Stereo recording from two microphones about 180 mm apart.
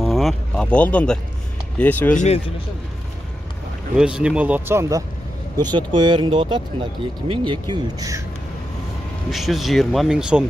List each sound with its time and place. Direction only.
0.0 s speech: centre (ahead or behind)
2.1 s speech: 35° left (ahead or behind)
3.9 s a man's voice: 5° right (ahead or behind); by 8.2 s 20° right (ahead or behind)
9.3 s speech: centre (ahead or behind)